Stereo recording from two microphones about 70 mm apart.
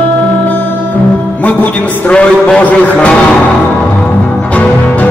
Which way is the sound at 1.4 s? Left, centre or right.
Centre.